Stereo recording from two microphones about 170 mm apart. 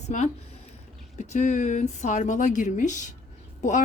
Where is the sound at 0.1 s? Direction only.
45° left (ahead or behind).